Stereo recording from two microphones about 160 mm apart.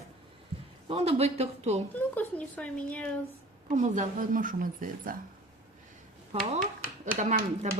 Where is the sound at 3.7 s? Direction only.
50° right (ahead or behind).